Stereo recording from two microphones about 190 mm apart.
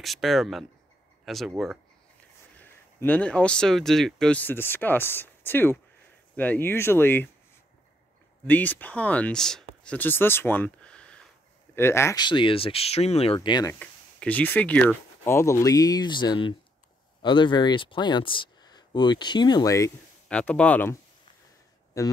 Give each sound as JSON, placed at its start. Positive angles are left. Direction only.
{"t": 0.0, "sound": "speech", "side_deg": 0}
{"t": 2.6, "sound": "speech", "side_deg": 10}
{"t": 8.5, "sound": "speech", "side_deg": 10}
{"t": 13.7, "sound": "speech", "side_deg": 5}
{"t": 20.2, "sound": "speech", "side_deg": 5}